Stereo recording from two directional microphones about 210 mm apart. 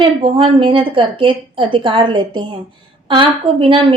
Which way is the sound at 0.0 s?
25° right (ahead or behind).